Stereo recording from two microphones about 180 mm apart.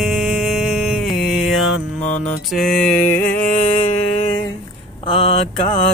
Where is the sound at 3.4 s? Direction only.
45° left (ahead or behind).